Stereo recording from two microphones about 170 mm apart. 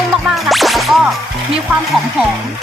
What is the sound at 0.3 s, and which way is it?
Whip, centre (ahead or behind).